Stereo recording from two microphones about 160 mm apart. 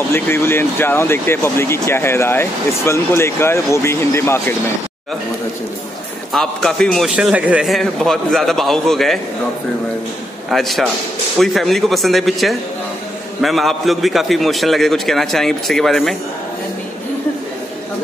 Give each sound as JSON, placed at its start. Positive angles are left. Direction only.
{"t": 0.1, "sound": "speech", "side_deg": 15}
{"t": 6.3, "sound": "a man's voice", "side_deg": 0}
{"t": 10.5, "sound": "a man's voice", "side_deg": 0}